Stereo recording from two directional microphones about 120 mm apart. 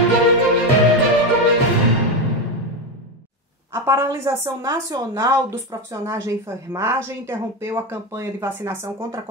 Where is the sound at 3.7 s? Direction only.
25° right (ahead or behind).